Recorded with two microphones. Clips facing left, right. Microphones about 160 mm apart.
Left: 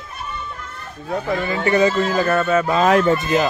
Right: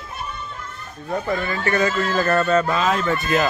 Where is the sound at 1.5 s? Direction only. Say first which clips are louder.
Left 6 dB; 20° left (ahead or behind).